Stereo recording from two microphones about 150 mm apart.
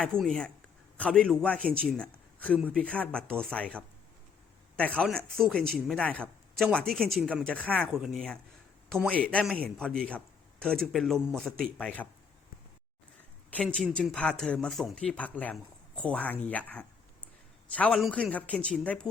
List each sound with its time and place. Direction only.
0.0 s speech: 5° left (ahead or behind)
13.5 s speech: 5° left (ahead or behind)